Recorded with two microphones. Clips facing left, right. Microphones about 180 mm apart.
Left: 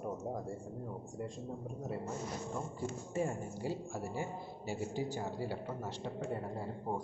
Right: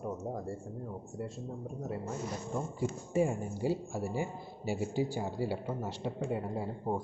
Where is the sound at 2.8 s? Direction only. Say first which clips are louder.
Right 7 dB; 10° right (ahead or behind).